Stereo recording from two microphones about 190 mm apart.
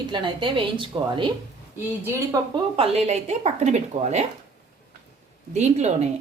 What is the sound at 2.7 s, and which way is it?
A woman's voice, 30° right (ahead or behind).